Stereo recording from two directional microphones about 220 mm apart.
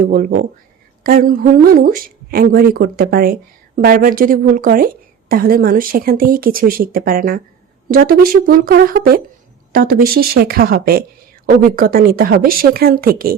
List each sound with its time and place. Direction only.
0.0 s speech: 40° right (ahead or behind)